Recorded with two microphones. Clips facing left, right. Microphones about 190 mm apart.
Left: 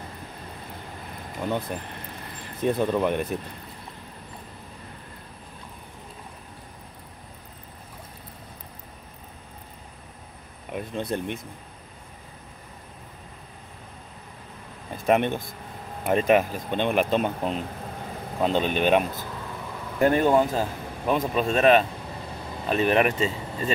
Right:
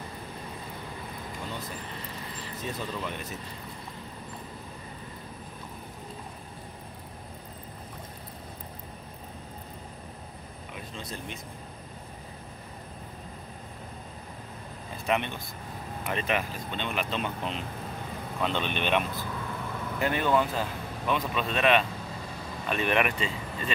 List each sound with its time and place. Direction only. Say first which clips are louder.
1.4 s speech: left 12 dB; 55° left (ahead or behind)
10.7 s speech: left 12 dB; 55° left (ahead or behind)
15.0 s speech: left 8 dB; 50° left (ahead or behind)